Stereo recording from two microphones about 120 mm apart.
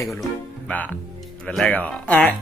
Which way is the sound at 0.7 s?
15° left (ahead or behind).